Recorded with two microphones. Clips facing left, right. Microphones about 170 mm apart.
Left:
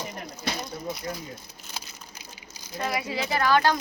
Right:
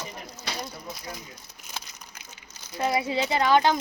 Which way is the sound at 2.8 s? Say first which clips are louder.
Right 4 dB; 25° right (ahead or behind).